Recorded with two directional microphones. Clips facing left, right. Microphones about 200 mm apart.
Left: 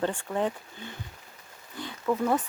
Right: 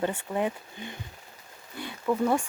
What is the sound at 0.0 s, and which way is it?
Speech, 10° right (ahead or behind).